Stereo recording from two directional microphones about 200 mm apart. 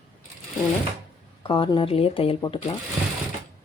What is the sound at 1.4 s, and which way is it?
Speech, 25° left (ahead or behind).